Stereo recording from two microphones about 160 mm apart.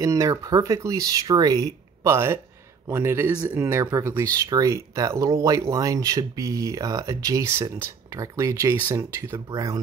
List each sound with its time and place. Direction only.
0.0 s speech: 20° right (ahead or behind)